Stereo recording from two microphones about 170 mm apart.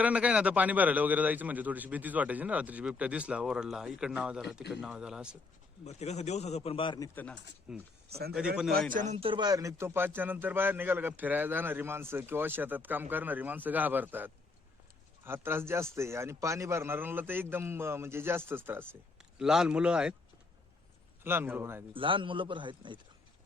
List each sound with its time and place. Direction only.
0.0 s a man's voice: 5° right (ahead or behind)
5.8 s a man's voice: 40° left (ahead or behind)
7.7 s speech: 5° right (ahead or behind)
8.1 s speech: 65° right (ahead or behind)
8.4 s speech: 5° right (ahead or behind)
8.9 s a man's voice: 45° right (ahead or behind); by 20.1 s 5° right (ahead or behind)
21.2 s a man's voice: 10° right (ahead or behind)
21.9 s a man's voice: 30° right (ahead or behind)